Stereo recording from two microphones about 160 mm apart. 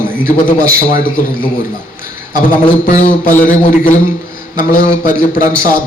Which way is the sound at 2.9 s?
55° left (ahead or behind).